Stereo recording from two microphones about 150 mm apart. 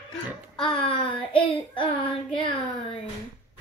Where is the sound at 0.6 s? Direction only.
35° left (ahead or behind).